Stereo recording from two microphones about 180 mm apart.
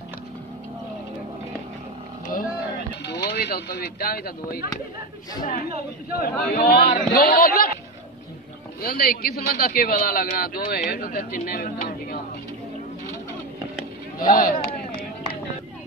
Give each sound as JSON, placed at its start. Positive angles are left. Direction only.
{"t": 3.1, "sound": "speech", "side_deg": 65}
{"t": 8.8, "sound": "a man's voice", "side_deg": 55}
{"t": 14.2, "sound": "a sound", "side_deg": 50}